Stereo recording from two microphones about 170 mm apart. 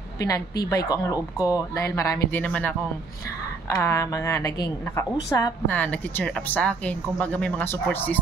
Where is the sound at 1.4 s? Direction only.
20° left (ahead or behind).